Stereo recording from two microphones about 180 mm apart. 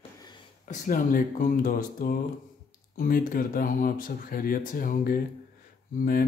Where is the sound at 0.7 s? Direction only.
50° left (ahead or behind).